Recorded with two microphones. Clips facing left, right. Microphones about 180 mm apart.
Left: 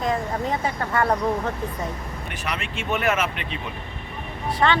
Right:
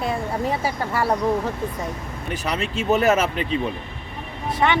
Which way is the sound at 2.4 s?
35° right (ahead or behind).